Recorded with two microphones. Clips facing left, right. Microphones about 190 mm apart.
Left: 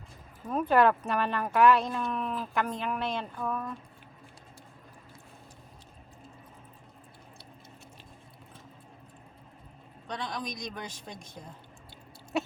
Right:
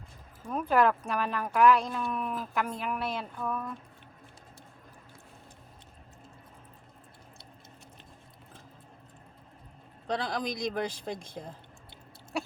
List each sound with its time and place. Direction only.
0.4 s speech: centre (ahead or behind)
10.1 s a woman's voice: 30° right (ahead or behind)